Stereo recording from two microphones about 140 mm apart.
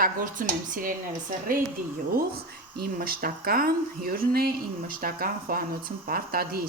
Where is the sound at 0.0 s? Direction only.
75° right (ahead or behind).